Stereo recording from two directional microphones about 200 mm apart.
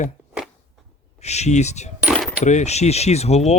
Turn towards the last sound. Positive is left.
turn(degrees=35)  # may be behind; listen again after turning